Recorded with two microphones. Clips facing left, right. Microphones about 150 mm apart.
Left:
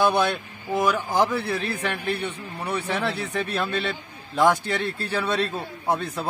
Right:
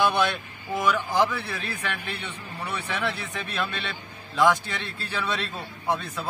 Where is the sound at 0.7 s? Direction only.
40° left (ahead or behind).